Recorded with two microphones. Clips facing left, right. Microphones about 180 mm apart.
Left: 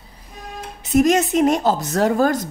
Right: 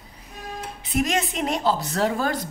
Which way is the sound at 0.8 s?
45° left (ahead or behind).